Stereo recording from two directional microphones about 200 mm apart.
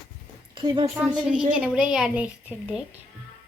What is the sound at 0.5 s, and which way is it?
Speech, 20° right (ahead or behind).